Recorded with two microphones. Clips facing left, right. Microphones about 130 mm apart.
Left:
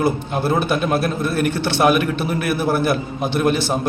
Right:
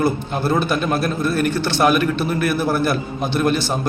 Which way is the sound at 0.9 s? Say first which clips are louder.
Even; 60° left (ahead or behind).